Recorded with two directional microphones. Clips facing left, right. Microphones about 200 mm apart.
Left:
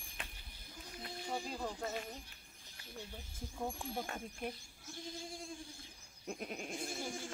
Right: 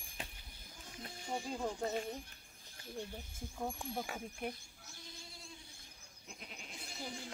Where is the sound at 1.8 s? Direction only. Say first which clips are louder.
Right 4 dB; 30° right (ahead or behind).